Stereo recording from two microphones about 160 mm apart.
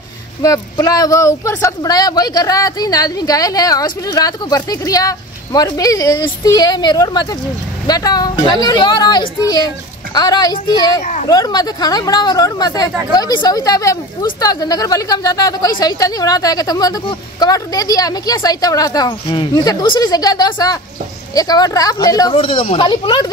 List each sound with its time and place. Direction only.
0.4 s speech: 20° left (ahead or behind)
11.0 s a child's voice: 50° left (ahead or behind)
11.2 s speech: 25° left (ahead or behind)